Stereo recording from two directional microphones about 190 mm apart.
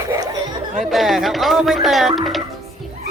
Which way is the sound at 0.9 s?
Centre (ahead or behind).